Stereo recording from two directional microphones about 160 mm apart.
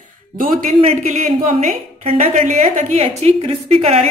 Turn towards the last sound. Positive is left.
turn(degrees=-40)  # may be behind; listen again after turning